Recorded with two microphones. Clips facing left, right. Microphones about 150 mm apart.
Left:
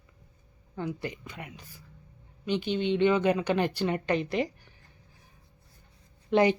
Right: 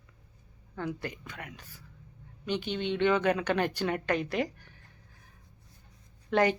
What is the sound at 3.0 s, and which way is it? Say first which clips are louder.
Speech: left 1 dB; 10° left (ahead or behind).